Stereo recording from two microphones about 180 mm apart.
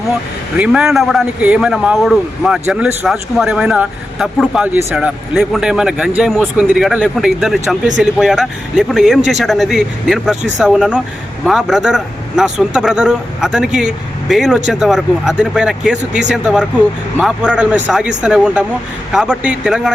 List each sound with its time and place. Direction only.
0.5 s a man's voice: 5° right (ahead or behind)
4.9 s a man's voice: centre (ahead or behind)